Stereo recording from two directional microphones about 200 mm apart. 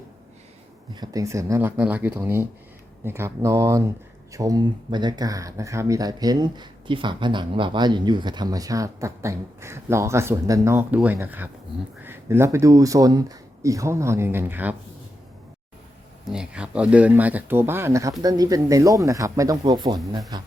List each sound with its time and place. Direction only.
0.9 s speech: 20° right (ahead or behind)
16.2 s speech: 5° right (ahead or behind); by 20.5 s 20° right (ahead or behind)